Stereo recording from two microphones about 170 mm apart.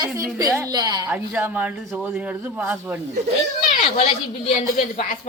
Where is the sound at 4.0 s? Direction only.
35° left (ahead or behind).